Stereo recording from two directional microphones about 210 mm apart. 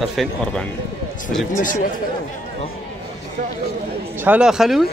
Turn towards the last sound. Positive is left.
turn(degrees=0)  # may be behind; listen again after turning